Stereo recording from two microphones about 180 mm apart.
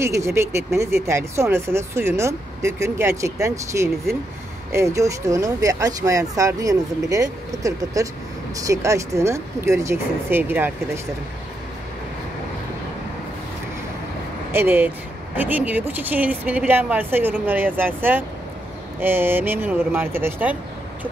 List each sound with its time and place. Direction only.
0.0 s speech: 15° right (ahead or behind)
14.5 s speech: 10° right (ahead or behind)